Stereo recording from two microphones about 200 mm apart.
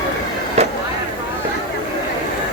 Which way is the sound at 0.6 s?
30° right (ahead or behind).